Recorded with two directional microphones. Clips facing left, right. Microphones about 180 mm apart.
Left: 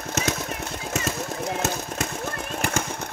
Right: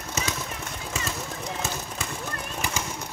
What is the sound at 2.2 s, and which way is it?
Vehicle, 50° left (ahead or behind).